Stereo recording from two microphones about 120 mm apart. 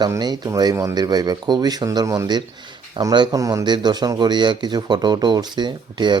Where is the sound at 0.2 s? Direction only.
35° right (ahead or behind).